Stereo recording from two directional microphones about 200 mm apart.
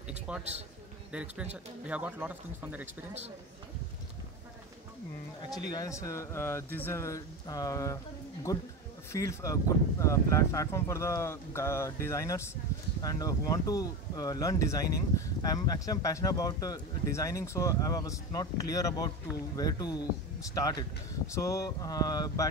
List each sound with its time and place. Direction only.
0.3 s a man's voice: 5° right (ahead or behind)
5.5 s speech: 20° left (ahead or behind)
21.3 s speech: 15° left (ahead or behind)